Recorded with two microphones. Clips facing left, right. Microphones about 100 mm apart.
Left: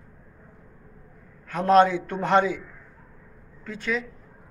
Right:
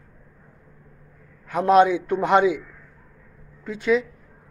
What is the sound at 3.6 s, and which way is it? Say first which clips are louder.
Speech: right 8 dB; 15° right (ahead or behind).